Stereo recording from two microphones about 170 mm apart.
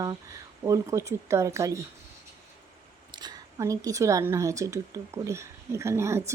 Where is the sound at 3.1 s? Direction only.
25° right (ahead or behind).